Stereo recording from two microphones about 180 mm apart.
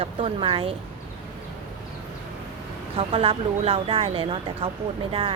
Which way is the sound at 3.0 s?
30° right (ahead or behind).